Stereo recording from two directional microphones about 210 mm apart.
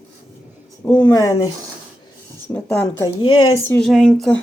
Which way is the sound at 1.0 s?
15° left (ahead or behind).